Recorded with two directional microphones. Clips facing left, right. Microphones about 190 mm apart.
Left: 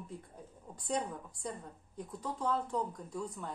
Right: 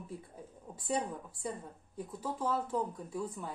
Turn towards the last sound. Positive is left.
turn(degrees=-5)  # may be behind; listen again after turning